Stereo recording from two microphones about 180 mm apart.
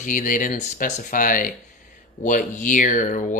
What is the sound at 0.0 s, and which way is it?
Speech, 50° left (ahead or behind).